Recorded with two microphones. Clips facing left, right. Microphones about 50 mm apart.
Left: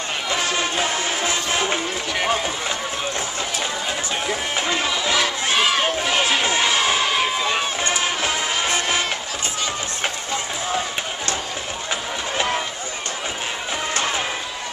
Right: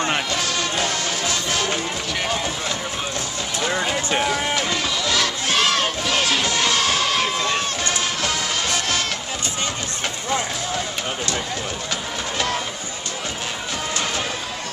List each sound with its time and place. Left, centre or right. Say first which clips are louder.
0.3 s music: left 1 dB; left
2.2 s run: left 3 dB; centre
4.3 s crowd: right 1 dB; left; by 7.6 s centre
7.8 s music: left 2 dB; centre
12.4 s a sound: left 2 dB; centre